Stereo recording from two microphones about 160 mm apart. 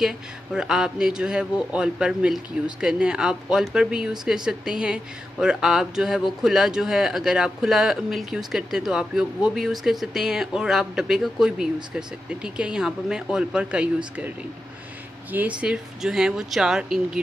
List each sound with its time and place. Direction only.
0.0 s a man's voice: 5° right (ahead or behind)
15.3 s a man's voice: 10° right (ahead or behind)